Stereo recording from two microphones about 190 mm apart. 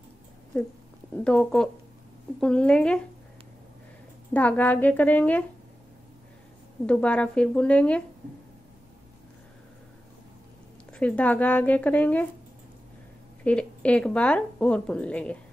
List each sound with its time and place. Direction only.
1.1 s speech: 5° left (ahead or behind)
4.3 s speech: 5° left (ahead or behind)
6.9 s speech: 5° left (ahead or behind)
10.9 s speech: 5° left (ahead or behind)
13.4 s speech: 5° left (ahead or behind)